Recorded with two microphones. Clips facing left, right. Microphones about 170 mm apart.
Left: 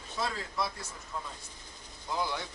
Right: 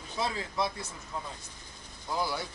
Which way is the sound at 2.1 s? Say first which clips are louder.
Right 1 dB; 5° right (ahead or behind).